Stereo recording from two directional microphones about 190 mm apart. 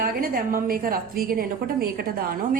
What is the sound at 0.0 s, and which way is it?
A woman's voice, 50° right (ahead or behind).